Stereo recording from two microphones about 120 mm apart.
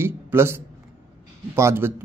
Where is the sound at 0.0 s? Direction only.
20° right (ahead or behind).